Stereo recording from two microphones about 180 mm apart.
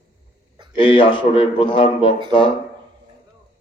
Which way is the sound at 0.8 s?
30° left (ahead or behind).